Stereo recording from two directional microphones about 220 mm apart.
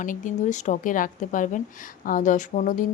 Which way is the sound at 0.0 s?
35° left (ahead or behind).